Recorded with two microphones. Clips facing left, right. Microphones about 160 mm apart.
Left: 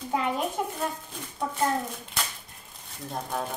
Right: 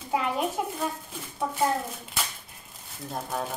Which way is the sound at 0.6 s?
5° right (ahead or behind).